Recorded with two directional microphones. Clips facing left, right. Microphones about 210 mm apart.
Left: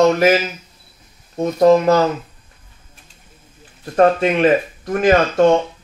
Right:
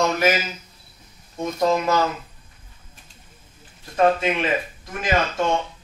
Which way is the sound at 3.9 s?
50° left (ahead or behind).